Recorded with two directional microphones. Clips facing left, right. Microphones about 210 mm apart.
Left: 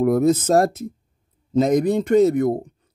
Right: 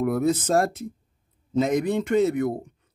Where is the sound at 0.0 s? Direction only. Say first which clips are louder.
Left 6 dB; 40° left (ahead or behind).